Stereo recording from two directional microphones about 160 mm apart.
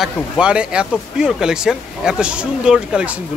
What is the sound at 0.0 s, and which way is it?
Speech, 5° right (ahead or behind).